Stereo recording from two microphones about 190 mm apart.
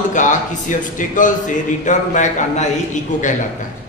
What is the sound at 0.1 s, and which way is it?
A man's voice, 40° left (ahead or behind).